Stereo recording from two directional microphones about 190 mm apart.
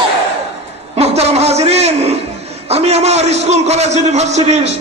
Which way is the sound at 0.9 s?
35° right (ahead or behind).